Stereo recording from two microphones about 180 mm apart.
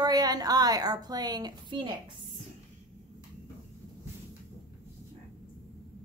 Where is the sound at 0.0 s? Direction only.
20° right (ahead or behind).